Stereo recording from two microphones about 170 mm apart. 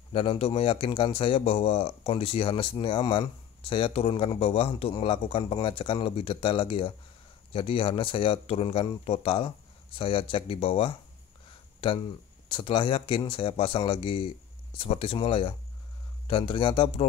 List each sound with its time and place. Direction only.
0.1 s a man's voice: 30° left (ahead or behind)